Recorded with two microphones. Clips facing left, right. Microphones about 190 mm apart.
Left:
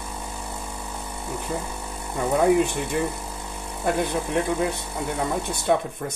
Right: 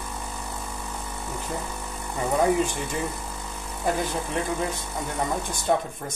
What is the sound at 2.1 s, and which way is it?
Speech, 60° left (ahead or behind).